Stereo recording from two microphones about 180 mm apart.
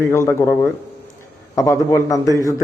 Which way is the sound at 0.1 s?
15° left (ahead or behind).